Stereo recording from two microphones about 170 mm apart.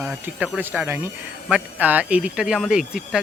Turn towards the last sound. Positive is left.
turn(degrees=-5)  # may be behind; listen again after turning